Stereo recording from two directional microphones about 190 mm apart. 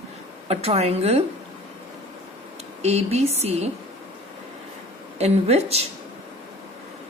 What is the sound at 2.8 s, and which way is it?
Speech, 35° right (ahead or behind).